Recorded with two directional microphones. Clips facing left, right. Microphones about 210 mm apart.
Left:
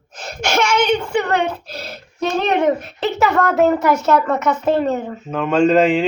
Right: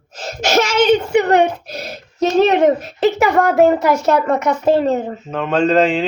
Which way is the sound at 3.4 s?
10° right (ahead or behind).